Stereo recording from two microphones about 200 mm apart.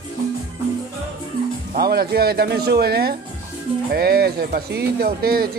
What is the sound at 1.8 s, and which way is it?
Speech, 50° right (ahead or behind).